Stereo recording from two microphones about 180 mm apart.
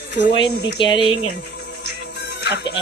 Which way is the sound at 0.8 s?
30° left (ahead or behind).